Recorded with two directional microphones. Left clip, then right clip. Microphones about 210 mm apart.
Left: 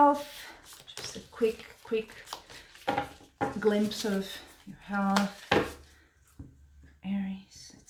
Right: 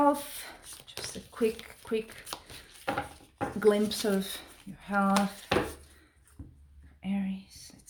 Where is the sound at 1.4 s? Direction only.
45° right (ahead or behind).